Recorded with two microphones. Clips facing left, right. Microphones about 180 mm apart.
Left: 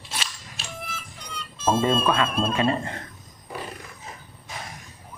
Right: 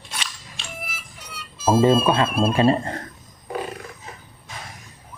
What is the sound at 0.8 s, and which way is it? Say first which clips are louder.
Music: left 1 dB; 10° right (ahead or behind).